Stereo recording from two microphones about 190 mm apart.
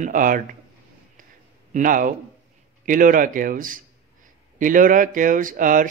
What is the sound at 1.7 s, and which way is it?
A man's voice, 45° right (ahead or behind).